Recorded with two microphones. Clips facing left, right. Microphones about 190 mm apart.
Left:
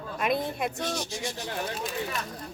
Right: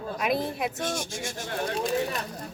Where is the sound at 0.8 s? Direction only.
50° right (ahead or behind).